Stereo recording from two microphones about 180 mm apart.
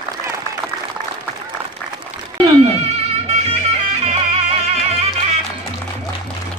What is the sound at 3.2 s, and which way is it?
Music, 35° right (ahead or behind).